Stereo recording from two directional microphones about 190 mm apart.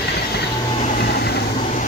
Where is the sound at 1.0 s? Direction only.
55° left (ahead or behind).